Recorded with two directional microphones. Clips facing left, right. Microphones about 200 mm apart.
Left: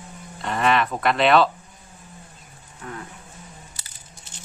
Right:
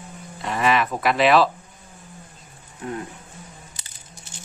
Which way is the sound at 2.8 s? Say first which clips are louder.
Right 6 dB; 20° right (ahead or behind).